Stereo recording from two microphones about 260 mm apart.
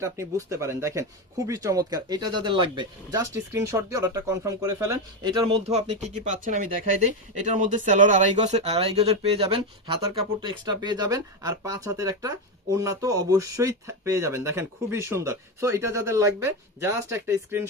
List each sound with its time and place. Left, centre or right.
0.0 s speech: centre